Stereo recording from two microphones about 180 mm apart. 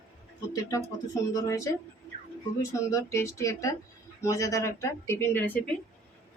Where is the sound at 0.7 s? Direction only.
20° left (ahead or behind).